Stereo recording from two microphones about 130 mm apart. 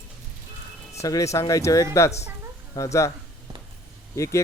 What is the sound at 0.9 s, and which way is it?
Speech, 25° left (ahead or behind).